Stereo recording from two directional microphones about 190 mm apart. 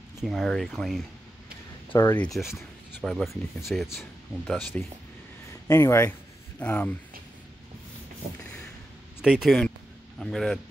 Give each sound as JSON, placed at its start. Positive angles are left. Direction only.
{"t": 0.2, "sound": "speech", "side_deg": 0}
{"t": 1.9, "sound": "speech", "side_deg": 20}
{"t": 2.1, "sound": "speech", "side_deg": 0}
{"t": 5.7, "sound": "speech", "side_deg": 15}
{"t": 9.2, "sound": "speech", "side_deg": -5}